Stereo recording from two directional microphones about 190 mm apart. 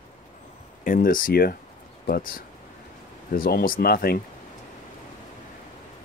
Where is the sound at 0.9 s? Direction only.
45° left (ahead or behind).